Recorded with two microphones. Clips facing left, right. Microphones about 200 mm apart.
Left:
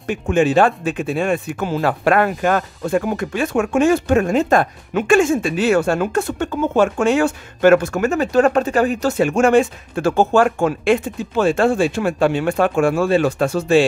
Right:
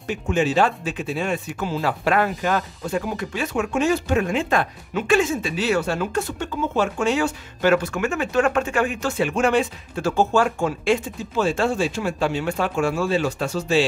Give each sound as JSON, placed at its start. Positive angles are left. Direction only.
{"t": 0.0, "sound": "speech", "side_deg": 55}